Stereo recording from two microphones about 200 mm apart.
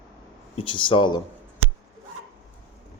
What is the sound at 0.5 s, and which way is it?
Speech, 25° left (ahead or behind).